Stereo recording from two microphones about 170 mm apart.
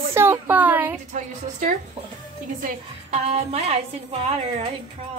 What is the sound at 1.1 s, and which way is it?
A woman's voice, 50° right (ahead or behind).